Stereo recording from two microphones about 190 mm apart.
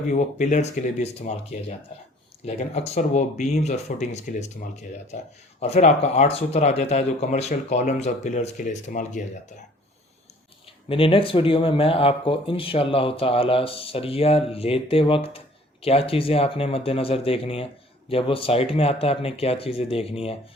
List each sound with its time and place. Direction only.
0.1 s speech: 40° left (ahead or behind)
2.6 s speech: 35° left (ahead or behind)
5.5 s speech: 35° left (ahead or behind)
10.8 s speech: 30° left (ahead or behind)